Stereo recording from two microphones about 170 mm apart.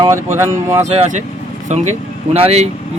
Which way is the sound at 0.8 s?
40° right (ahead or behind).